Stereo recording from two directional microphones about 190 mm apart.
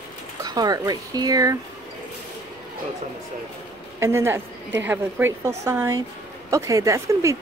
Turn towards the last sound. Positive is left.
turn(degrees=-15)  # may be behind; listen again after turning